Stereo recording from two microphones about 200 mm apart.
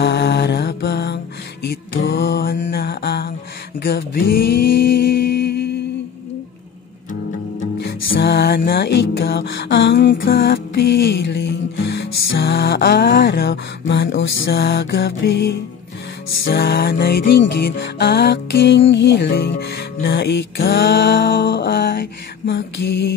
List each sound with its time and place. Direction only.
0.0 s mantra: 55° left (ahead or behind)
3.8 s music: 50° left (ahead or behind)
7.8 s music: 50° left (ahead or behind)